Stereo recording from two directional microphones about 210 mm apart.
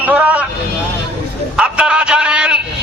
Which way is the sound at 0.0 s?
5° right (ahead or behind).